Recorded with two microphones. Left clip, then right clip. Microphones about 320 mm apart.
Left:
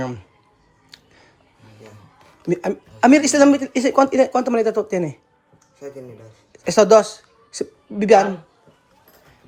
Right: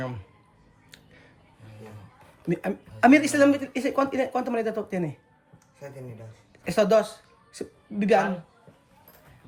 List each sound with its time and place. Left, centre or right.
0.9 s a sound: centre
2.4 s speech: centre
6.5 s a woman's voice: centre